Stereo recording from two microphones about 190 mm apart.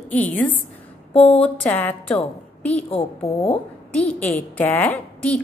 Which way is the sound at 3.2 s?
30° left (ahead or behind).